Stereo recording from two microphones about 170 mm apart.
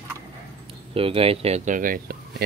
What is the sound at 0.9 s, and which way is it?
Speech, 35° right (ahead or behind).